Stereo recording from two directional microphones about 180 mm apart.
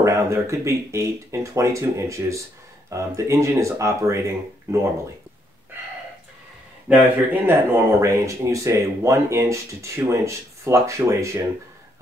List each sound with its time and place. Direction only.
0.0 s speech: 15° right (ahead or behind)
6.9 s speech: 10° right (ahead or behind)